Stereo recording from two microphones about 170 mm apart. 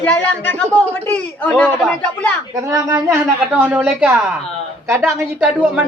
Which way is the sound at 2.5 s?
20° right (ahead or behind).